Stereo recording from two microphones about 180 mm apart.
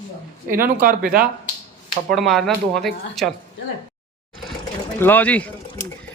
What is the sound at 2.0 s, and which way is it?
Speech, centre (ahead or behind).